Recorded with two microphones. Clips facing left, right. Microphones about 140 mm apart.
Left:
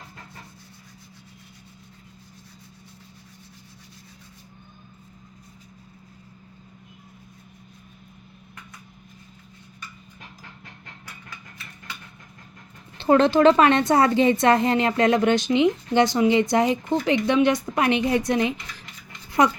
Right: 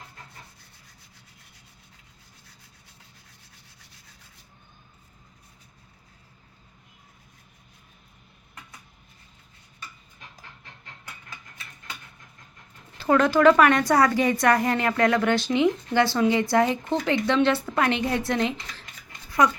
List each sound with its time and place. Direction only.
13.0 s a woman's voice: 25° left (ahead or behind)